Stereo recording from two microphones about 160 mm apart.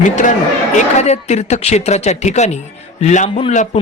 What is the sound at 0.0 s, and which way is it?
Speech, 50° left (ahead or behind).